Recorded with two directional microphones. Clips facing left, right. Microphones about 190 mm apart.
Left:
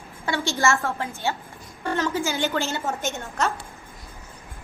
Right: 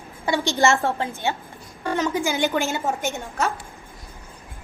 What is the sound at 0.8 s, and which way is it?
Speech, 35° right (ahead or behind).